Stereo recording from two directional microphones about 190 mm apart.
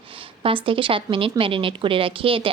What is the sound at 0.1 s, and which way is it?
A woman's voice, 25° right (ahead or behind).